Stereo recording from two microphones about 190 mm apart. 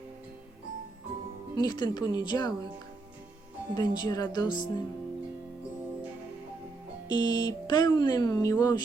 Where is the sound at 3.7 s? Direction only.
20° left (ahead or behind).